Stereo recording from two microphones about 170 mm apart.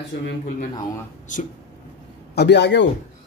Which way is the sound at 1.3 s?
50° left (ahead or behind).